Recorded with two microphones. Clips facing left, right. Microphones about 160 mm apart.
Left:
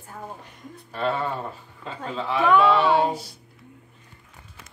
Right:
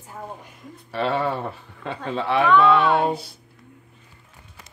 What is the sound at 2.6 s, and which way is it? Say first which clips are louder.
Female singing: right 1 dB; 55° right (ahead or behind).